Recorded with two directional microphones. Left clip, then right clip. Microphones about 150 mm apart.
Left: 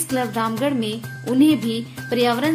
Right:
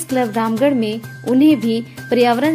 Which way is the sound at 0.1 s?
20° right (ahead or behind).